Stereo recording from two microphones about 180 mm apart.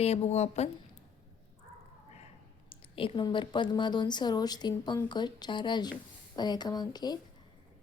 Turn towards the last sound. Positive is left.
turn(degrees=25)  # may be behind; listen again after turning